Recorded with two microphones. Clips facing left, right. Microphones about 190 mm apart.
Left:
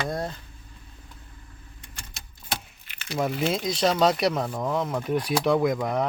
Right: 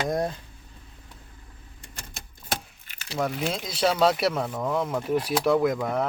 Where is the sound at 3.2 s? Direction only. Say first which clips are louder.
Left 3 dB; centre (ahead or behind).